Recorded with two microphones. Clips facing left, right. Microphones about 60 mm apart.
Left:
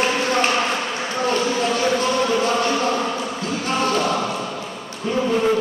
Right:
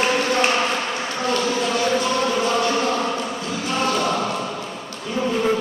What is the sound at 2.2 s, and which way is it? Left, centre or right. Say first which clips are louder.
Music: left 1 dB; centre.